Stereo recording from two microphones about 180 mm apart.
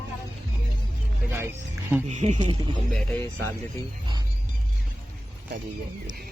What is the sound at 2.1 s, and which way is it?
Speech, 40° right (ahead or behind).